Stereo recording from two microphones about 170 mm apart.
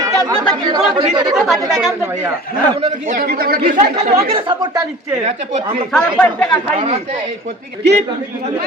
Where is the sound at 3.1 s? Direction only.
60° right (ahead or behind).